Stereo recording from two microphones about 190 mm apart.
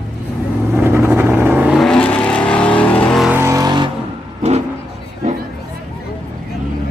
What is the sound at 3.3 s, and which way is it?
Vehicle, 15° right (ahead or behind).